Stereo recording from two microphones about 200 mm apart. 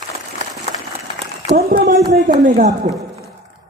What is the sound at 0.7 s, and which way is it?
Applause, 35° left (ahead or behind).